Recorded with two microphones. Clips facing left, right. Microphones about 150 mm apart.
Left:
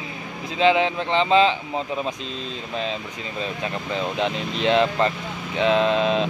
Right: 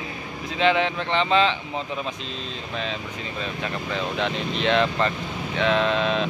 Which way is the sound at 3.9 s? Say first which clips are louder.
Left 2 dB; 35° left (ahead or behind).